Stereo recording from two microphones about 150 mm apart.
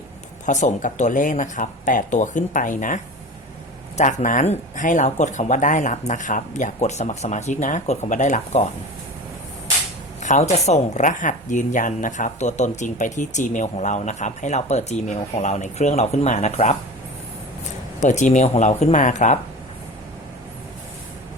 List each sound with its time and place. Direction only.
0.4 s speech: 55° left (ahead or behind)
10.2 s a woman's voice: 50° left (ahead or behind)
18.0 s a woman's voice: 50° left (ahead or behind)